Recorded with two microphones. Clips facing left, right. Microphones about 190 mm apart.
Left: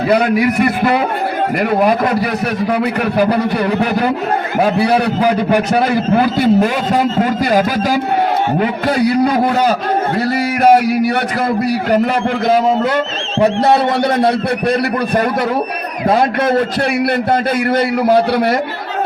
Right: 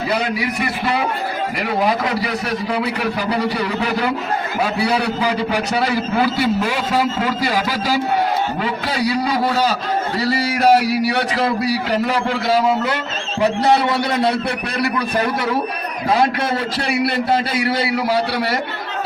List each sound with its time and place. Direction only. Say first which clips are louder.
0.1 s a man's voice: left 10 dB; 55° left (ahead or behind)
16.0 s a man's voice: left 4 dB; 55° left (ahead or behind)